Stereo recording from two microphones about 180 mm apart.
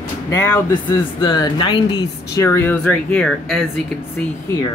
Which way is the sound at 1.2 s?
25° left (ahead or behind).